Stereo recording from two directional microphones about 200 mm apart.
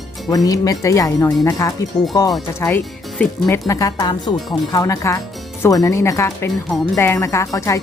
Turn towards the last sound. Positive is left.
turn(degrees=15)  # may be behind; listen again after turning